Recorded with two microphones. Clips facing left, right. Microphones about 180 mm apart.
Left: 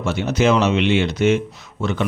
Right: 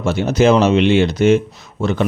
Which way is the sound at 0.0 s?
35° right (ahead or behind).